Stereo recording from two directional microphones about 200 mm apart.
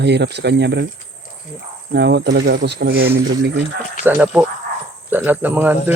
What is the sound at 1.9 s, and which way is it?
Speech, 55° right (ahead or behind).